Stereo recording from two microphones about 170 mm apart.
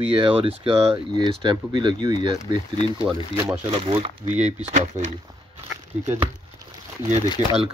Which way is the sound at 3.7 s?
35° right (ahead or behind).